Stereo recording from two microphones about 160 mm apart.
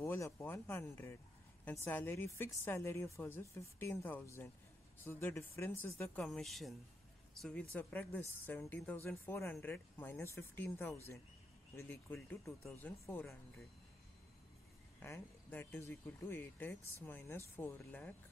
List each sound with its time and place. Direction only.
0.0 s speech: 15° left (ahead or behind)
6.2 s speech: centre (ahead or behind)
15.0 s speech: 15° left (ahead or behind)